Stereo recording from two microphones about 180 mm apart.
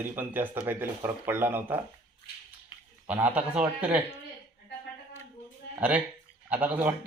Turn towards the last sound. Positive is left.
turn(degrees=-10)  # may be behind; listen again after turning